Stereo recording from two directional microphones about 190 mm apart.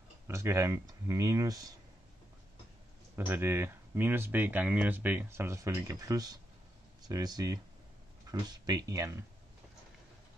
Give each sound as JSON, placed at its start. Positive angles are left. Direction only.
{"t": 0.3, "sound": "speech", "side_deg": -15}
{"t": 3.2, "sound": "speech", "side_deg": -10}